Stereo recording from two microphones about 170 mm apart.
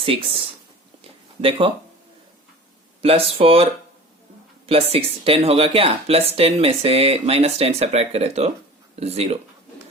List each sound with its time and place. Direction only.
0.0 s speech: 35° right (ahead or behind)
3.0 s speech: 35° right (ahead or behind)